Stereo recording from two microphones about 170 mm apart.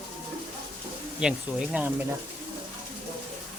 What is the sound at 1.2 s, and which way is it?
Speech, 5° right (ahead or behind).